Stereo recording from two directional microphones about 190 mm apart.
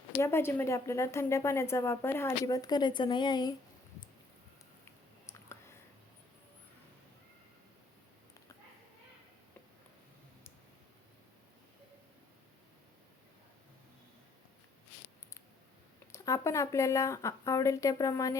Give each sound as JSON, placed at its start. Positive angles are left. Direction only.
{"t": 0.2, "sound": "a woman's voice", "side_deg": 10}
{"t": 5.2, "sound": "a sound", "side_deg": 15}
{"t": 16.1, "sound": "a woman's voice", "side_deg": 15}